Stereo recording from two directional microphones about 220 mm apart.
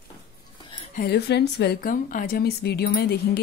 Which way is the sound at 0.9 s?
45° left (ahead or behind).